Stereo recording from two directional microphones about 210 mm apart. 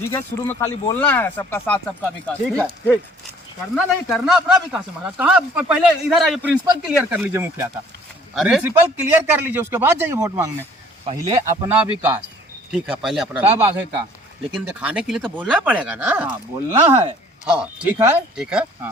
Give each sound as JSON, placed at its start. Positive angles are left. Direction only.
{"t": 0.0, "sound": "a man's voice", "side_deg": 15}
{"t": 17.4, "sound": "speech", "side_deg": -5}